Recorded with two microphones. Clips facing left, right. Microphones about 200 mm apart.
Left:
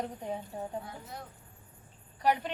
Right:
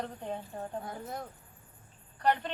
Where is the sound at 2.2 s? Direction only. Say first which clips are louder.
Even; 10° left (ahead or behind).